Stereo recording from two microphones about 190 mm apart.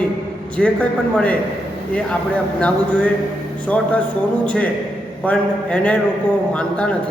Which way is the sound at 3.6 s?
10° left (ahead or behind).